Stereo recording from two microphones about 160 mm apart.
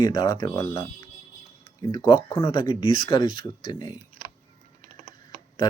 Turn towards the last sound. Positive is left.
turn(degrees=25)  # may be behind; listen again after turning